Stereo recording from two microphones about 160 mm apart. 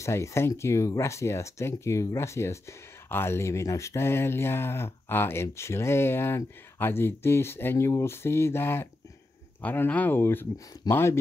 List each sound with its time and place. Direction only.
0.0 s speech: 20° left (ahead or behind)